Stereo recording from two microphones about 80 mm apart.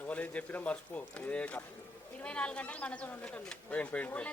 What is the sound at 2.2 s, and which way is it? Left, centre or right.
Speech, centre.